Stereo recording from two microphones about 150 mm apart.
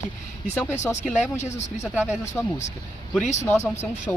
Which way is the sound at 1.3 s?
50° left (ahead or behind).